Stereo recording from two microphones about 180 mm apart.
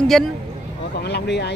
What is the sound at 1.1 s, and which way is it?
Vehicle, 70° left (ahead or behind).